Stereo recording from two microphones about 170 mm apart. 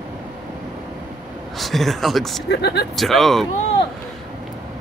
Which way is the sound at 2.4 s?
75° left (ahead or behind).